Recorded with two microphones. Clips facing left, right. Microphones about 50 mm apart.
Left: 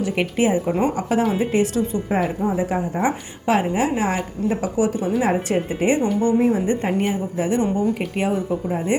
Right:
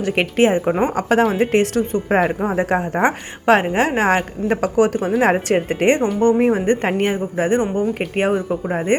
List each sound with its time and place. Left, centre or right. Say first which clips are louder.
0.0 s a woman's voice: right 4 dB; right
0.7 s a woman's voice: right 2 dB; right
0.9 s speech: right 4 dB; right
1.4 s a woman's voice: right 3 dB; right